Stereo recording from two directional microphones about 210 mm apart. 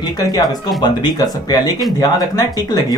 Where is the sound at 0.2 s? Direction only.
20° left (ahead or behind).